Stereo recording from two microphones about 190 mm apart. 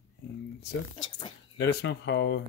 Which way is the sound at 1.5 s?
60° left (ahead or behind).